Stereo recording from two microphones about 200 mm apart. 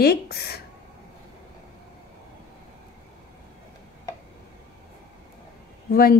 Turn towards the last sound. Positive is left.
turn(degrees=50)  # may be behind; listen again after turning